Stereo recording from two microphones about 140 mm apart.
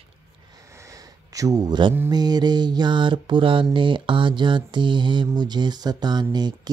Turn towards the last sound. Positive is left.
turn(degrees=-30)  # may be behind; listen again after turning